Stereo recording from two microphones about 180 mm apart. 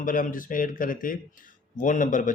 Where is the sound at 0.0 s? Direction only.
50° left (ahead or behind).